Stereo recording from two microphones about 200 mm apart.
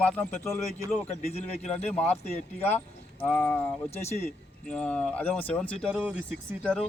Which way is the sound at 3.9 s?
30° left (ahead or behind).